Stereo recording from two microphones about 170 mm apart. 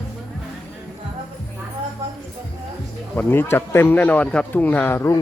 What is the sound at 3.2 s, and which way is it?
Speech, 10° left (ahead or behind).